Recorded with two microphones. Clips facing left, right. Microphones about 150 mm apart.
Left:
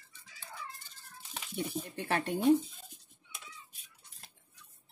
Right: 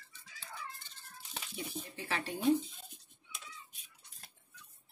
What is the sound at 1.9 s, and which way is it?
Speech, 55° left (ahead or behind).